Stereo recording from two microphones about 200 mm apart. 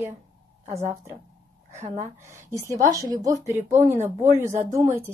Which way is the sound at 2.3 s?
15° right (ahead or behind).